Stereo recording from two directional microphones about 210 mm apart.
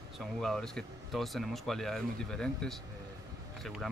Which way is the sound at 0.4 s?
5° left (ahead or behind).